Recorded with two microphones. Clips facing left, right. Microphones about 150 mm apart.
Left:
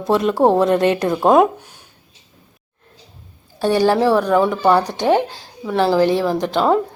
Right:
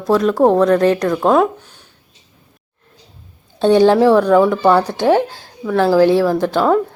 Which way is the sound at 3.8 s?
10° left (ahead or behind).